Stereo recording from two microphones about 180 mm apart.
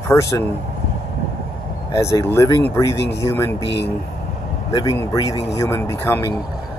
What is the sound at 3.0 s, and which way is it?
Speech, 70° left (ahead or behind).